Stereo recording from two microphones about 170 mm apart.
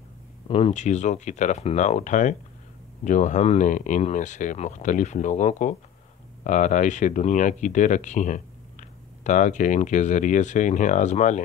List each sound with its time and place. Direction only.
0.5 s speech: 35° left (ahead or behind)